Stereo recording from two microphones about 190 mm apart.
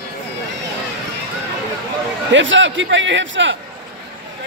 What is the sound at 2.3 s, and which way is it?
A man's voice, 80° right.